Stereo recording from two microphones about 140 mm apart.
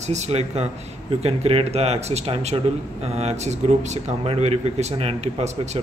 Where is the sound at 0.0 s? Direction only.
55° right (ahead or behind).